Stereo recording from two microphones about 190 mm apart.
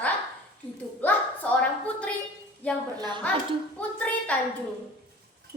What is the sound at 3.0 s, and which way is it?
Speech, 25° right (ahead or behind).